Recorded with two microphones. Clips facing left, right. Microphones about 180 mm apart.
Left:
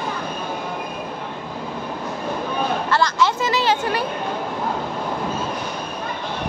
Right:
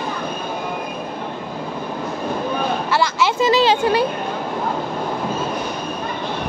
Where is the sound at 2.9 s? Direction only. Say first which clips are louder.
Even; 10° right (ahead or behind).